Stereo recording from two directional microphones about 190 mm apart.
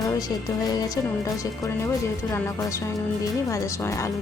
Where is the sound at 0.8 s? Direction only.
15° left (ahead or behind).